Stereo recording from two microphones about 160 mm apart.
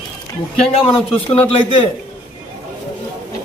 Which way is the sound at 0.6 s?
35° left (ahead or behind).